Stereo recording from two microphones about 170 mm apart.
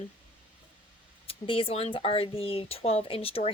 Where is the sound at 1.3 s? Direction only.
30° left (ahead or behind).